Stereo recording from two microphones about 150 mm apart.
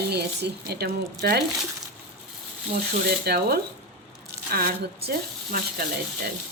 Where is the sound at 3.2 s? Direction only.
90° right.